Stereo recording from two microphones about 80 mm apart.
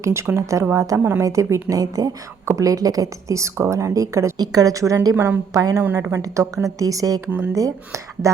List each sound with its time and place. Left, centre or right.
0.0 s a woman's voice: right
0.9 s a woman's voice: right
1.2 s a woman's voice: right
4.4 s a woman's voice: right
5.9 s a woman's voice: right
6.7 s a woman's voice: right
7.3 s speech: centre
7.5 s a woman's voice: right